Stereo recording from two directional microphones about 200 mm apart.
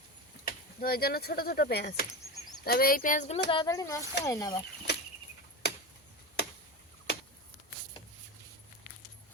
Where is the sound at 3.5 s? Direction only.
20° left (ahead or behind).